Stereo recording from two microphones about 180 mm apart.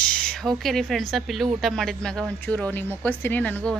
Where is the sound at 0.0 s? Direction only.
5° left (ahead or behind).